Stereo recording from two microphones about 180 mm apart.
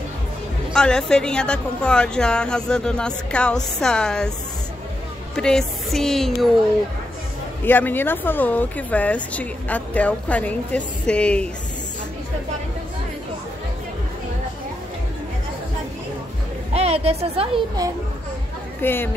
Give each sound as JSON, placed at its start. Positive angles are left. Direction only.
{"t": 0.7, "sound": "a woman's voice", "side_deg": 5}
{"t": 5.3, "sound": "a woman's voice", "side_deg": 5}
{"t": 7.6, "sound": "speech", "side_deg": 10}
{"t": 16.7, "sound": "a woman's voice", "side_deg": -35}
{"t": 18.8, "sound": "speech", "side_deg": 10}